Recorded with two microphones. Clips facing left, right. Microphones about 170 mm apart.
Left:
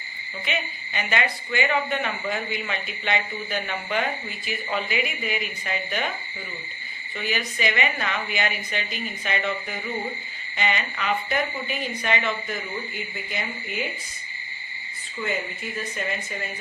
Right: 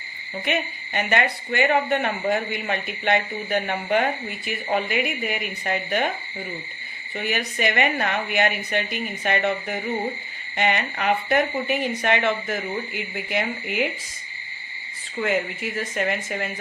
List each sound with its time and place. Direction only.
0.4 s a woman's voice: 55° right (ahead or behind)
7.2 s speech: 60° right (ahead or behind)
15.2 s speech: 80° right